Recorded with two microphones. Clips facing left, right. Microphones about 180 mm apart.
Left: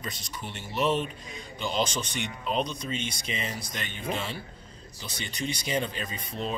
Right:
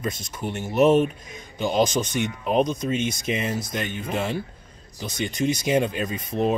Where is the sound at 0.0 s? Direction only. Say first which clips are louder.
Right 9 dB; 50° right (ahead or behind).